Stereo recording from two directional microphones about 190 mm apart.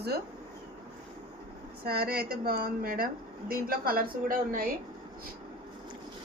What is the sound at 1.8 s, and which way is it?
A woman's voice, 55° right (ahead or behind).